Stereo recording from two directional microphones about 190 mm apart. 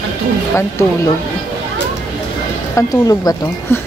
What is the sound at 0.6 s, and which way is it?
Speech, 15° left (ahead or behind).